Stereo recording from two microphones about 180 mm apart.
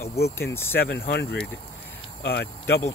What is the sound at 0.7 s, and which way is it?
Speech, 60° left (ahead or behind).